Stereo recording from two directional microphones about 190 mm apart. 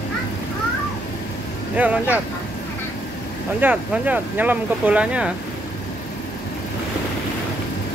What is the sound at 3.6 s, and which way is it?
Speech, 10° right (ahead or behind).